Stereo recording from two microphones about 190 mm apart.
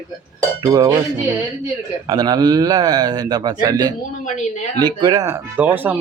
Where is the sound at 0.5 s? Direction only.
20° right (ahead or behind).